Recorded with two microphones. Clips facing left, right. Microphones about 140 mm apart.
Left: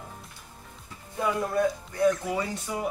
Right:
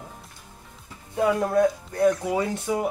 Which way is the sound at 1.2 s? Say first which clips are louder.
Right 5 dB; 55° right (ahead or behind).